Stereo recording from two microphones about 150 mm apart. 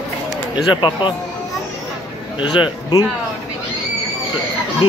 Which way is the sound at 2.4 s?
30° left (ahead or behind).